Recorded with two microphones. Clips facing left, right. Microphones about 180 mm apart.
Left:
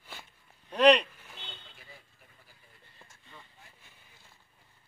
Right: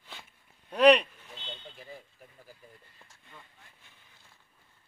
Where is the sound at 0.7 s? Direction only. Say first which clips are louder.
Right 1 dB; 5° right (ahead or behind).